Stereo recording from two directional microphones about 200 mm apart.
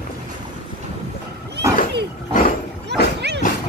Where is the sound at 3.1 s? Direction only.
60° right (ahead or behind).